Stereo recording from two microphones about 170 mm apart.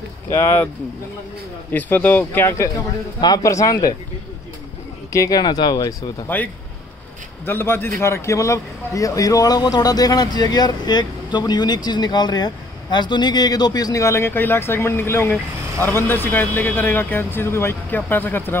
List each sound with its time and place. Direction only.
0.3 s speech: 15° left (ahead or behind)
1.7 s speech: 10° left (ahead or behind)
5.1 s speech: 20° left (ahead or behind)
6.2 s speech: 10° left (ahead or behind)